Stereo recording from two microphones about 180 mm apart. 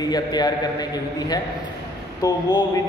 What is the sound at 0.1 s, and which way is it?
Speech, 20° left (ahead or behind).